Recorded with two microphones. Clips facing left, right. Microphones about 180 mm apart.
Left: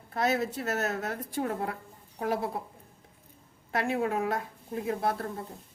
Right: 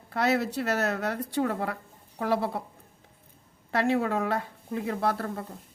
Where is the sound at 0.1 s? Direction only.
70° right (ahead or behind).